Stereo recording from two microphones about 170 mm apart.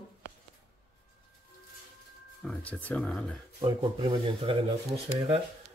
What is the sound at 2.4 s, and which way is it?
Speech, 5° left (ahead or behind).